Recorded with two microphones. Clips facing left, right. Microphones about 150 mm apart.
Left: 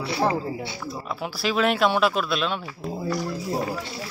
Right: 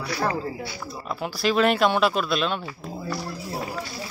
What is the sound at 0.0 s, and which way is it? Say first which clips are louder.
Speech: left 2 dB; 25° left (ahead or behind).